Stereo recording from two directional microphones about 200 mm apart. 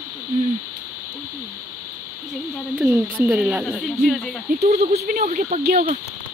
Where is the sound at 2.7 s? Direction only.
10° right (ahead or behind).